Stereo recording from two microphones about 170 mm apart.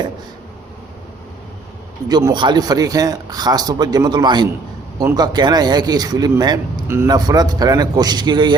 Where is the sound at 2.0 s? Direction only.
25° right (ahead or behind).